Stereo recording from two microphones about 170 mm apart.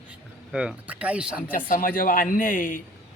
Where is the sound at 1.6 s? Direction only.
50° left (ahead or behind).